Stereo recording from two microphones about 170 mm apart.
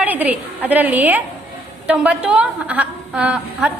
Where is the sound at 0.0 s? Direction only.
10° right (ahead or behind).